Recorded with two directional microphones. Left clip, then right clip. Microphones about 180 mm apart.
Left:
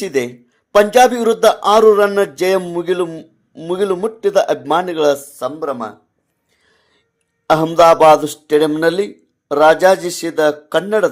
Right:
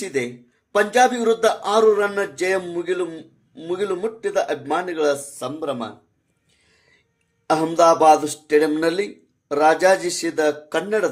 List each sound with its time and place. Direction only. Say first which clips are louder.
0.0 s a man's voice: left 6 dB; 35° left (ahead or behind)
5.3 s a man's voice: left 5 dB; 25° left (ahead or behind)
7.4 s a man's voice: left 6 dB; 25° left (ahead or behind)